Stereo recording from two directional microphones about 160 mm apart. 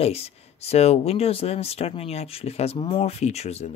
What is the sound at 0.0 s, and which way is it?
Speech, 40° left (ahead or behind).